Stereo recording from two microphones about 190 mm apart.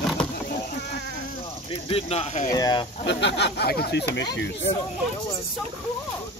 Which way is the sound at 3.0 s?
65° left (ahead or behind).